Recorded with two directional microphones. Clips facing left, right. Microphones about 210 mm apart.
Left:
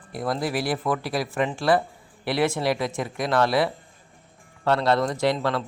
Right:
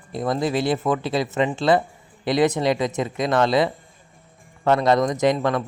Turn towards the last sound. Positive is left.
turn(degrees=-15)  # may be behind; listen again after turning